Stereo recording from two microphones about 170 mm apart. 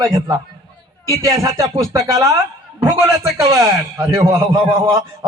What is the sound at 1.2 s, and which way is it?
Speech, 20° right (ahead or behind).